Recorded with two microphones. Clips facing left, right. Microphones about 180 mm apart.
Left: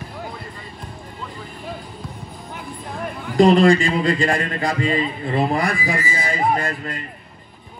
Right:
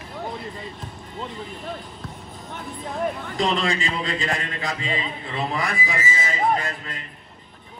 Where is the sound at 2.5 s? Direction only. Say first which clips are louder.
Right 1 dB; centre (ahead or behind).